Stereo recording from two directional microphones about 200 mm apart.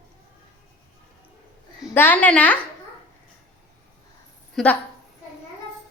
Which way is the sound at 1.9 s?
10° left (ahead or behind).